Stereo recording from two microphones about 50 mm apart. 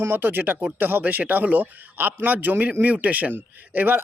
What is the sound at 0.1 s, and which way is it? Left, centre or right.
A man's voice, right.